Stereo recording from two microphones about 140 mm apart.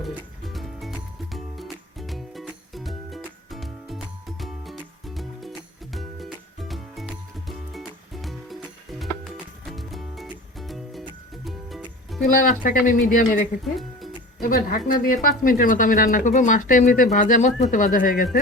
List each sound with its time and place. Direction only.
0.0 s music: centre (ahead or behind)
12.6 s speech: 70° left (ahead or behind)
13.7 s music: centre (ahead or behind)
14.4 s a woman's voice: 80° left